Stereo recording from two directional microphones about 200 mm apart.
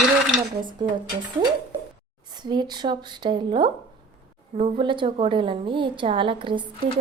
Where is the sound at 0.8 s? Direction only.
20° right (ahead or behind).